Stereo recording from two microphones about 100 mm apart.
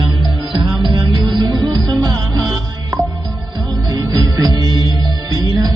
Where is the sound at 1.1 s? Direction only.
50° right (ahead or behind).